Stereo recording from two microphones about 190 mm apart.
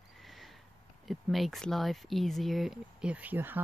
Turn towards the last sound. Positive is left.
turn(degrees=-10)  # may be behind; listen again after turning